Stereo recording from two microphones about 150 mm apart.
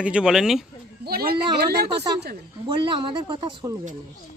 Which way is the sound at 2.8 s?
35° right (ahead or behind).